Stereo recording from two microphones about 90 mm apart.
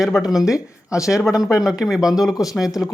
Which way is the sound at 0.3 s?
5° right (ahead or behind).